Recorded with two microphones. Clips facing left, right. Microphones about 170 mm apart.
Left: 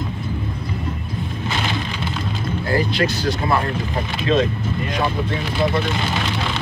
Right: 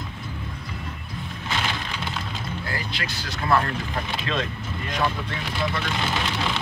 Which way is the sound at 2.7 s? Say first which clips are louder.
Left 12 dB; 35° left (ahead or behind).